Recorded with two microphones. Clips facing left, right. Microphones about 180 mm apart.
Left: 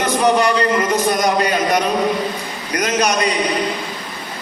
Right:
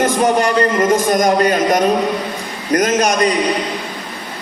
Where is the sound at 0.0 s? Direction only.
45° right (ahead or behind).